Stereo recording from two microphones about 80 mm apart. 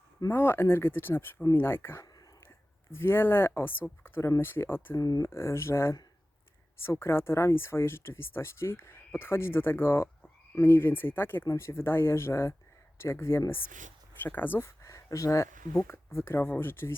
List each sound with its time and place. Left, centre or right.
0.3 s speech: left
4.9 s speech: left
5.2 s speech: left
14.8 s speech: left